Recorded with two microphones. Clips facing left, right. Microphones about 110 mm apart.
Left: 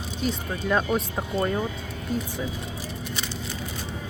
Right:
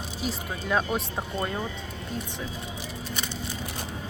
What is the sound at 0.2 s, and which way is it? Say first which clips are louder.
Speech: left 4 dB; centre (ahead or behind).